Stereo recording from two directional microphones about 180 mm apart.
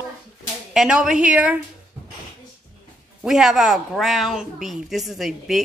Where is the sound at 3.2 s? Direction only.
Centre (ahead or behind).